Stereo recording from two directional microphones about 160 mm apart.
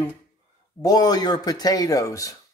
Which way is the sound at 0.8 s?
25° left (ahead or behind).